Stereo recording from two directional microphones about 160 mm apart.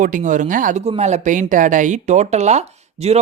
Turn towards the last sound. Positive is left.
turn(degrees=-40)  # may be behind; listen again after turning